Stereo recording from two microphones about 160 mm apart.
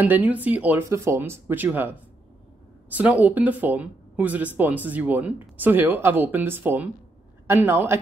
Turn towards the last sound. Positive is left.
turn(degrees=-10)  # may be behind; listen again after turning